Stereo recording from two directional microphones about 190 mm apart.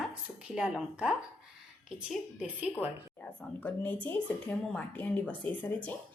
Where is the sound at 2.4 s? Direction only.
5° right (ahead or behind).